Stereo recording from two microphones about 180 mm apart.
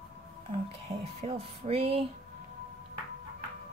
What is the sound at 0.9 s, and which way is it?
Speech, 35° right (ahead or behind).